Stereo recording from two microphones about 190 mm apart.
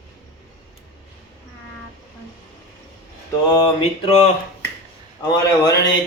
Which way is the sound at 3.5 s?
25° left (ahead or behind).